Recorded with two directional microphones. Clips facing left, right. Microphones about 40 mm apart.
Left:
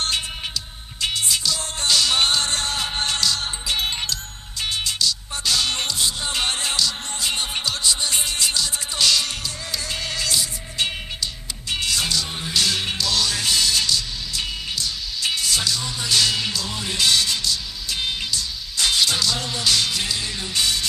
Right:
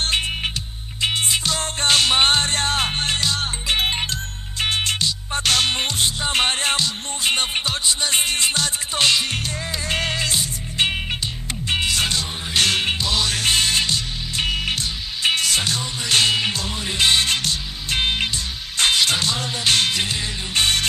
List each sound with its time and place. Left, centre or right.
0.1 s music: right
5.4 s music: right
9.8 s music: right
12.9 s music: right
13.3 s music: right
14.5 s music: right
14.8 s music: right